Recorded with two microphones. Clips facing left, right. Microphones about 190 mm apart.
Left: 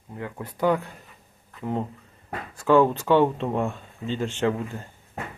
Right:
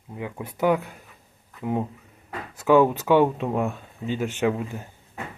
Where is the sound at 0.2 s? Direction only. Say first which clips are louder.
Right 1 dB; 10° right (ahead or behind).